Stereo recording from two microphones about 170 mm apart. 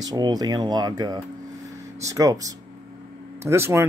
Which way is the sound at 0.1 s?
25° right (ahead or behind).